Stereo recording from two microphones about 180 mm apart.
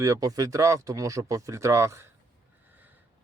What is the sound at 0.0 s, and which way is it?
Speech, 20° right (ahead or behind).